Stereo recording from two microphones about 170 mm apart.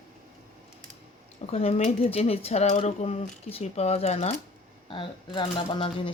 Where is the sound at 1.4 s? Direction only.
35° left (ahead or behind).